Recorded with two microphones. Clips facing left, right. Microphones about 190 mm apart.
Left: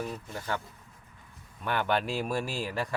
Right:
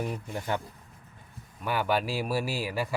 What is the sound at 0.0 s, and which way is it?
Speech, 15° right (ahead or behind).